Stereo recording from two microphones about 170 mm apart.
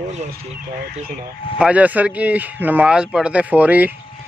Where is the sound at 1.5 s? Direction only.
5° right (ahead or behind).